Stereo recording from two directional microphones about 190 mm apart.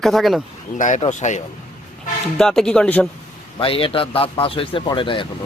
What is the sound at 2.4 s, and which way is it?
Speech, 5° left (ahead or behind).